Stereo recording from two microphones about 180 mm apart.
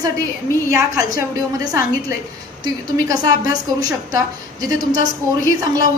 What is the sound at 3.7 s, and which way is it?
Speech, 20° right (ahead or behind).